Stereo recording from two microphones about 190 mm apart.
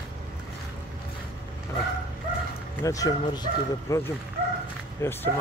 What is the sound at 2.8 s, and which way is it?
Speech, 20° left (ahead or behind).